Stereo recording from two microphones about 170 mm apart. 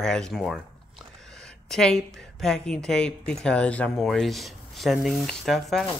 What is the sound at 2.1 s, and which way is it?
Speech, 5° left (ahead or behind).